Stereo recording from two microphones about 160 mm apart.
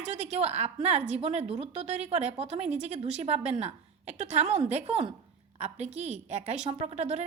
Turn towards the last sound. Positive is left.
turn(degrees=-45)  # may be behind; listen again after turning